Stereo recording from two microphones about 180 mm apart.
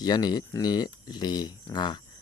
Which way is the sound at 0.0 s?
20° left (ahead or behind).